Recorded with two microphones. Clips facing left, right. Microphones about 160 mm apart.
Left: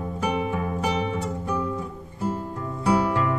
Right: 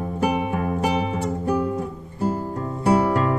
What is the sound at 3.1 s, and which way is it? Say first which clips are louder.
Music: right 3 dB; 35° right (ahead or behind).